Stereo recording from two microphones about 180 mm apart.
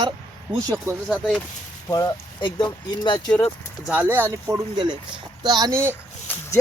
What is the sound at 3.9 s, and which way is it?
Speech, 10° right (ahead or behind).